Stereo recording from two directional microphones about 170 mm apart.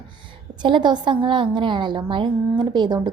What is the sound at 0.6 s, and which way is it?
A woman's voice, 25° right (ahead or behind).